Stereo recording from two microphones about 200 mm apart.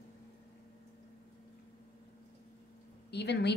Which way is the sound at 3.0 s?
55° left (ahead or behind).